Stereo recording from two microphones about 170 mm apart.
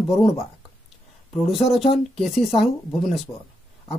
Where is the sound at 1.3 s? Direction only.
Centre (ahead or behind).